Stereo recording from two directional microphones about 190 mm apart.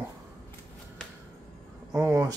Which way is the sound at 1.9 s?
15° right (ahead or behind).